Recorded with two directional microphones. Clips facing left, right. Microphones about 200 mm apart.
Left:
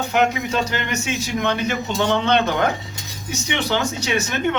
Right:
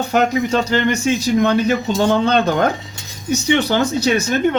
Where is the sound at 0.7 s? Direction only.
35° right (ahead or behind).